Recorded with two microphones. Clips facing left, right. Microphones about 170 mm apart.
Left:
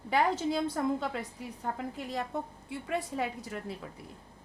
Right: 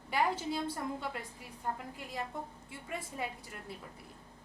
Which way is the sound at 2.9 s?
90° left.